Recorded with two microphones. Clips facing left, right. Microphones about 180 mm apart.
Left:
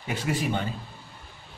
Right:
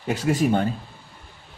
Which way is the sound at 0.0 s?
40° right (ahead or behind).